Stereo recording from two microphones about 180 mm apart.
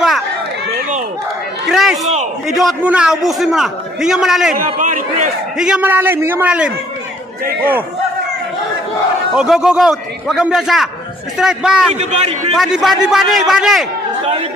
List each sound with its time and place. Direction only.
1.7 s a sound: centre (ahead or behind)
2.4 s a man's voice: centre (ahead or behind)
4.7 s a man's voice: 45° right (ahead or behind)
5.6 s a man's voice: 5° right (ahead or behind)
9.3 s a man's voice: 5° right (ahead or behind)
11.9 s a man's voice: 35° right (ahead or behind)
12.5 s a man's voice: centre (ahead or behind)